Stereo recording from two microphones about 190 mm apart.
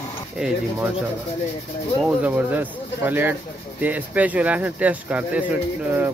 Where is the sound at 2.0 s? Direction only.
10° right (ahead or behind).